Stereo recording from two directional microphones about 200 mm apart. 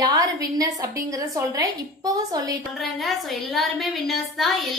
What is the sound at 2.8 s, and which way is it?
A woman's voice, centre (ahead or behind).